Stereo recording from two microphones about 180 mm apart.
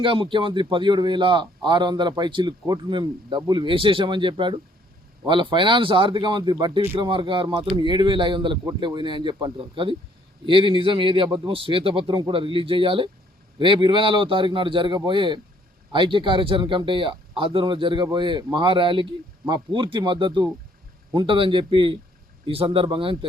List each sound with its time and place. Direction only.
0.0 s a man's voice: 30° right (ahead or behind)